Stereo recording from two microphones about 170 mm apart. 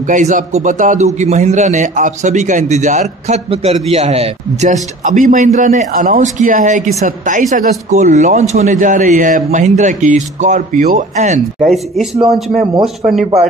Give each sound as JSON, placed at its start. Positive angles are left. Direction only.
{"t": 0.1, "sound": "speech", "side_deg": -45}
{"t": 11.6, "sound": "speech", "side_deg": 0}